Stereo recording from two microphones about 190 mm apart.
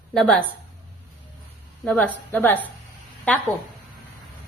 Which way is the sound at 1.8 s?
10° left (ahead or behind).